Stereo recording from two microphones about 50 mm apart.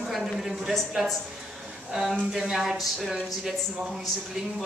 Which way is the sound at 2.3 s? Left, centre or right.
Centre.